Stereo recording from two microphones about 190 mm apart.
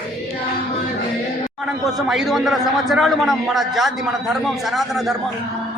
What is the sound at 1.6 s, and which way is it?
A man's voice, centre (ahead or behind).